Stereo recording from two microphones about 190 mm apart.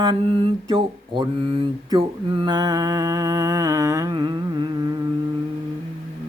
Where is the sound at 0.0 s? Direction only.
25° right (ahead or behind).